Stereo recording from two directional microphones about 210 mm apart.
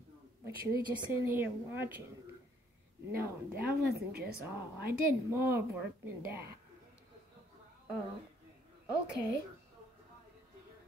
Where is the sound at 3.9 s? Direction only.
50° right (ahead or behind).